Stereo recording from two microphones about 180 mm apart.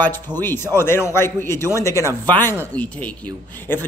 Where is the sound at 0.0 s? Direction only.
10° left (ahead or behind).